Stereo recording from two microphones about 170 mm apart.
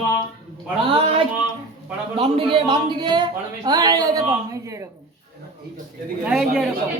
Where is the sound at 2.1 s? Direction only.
30° right (ahead or behind).